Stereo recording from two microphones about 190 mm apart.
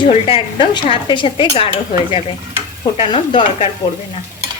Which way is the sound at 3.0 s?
25° left (ahead or behind).